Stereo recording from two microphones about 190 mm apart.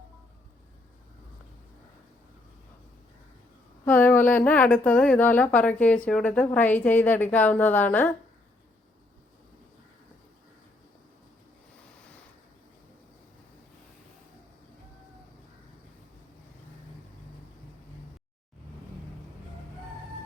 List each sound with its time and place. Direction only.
3.8 s a woman's voice: 10° left (ahead or behind)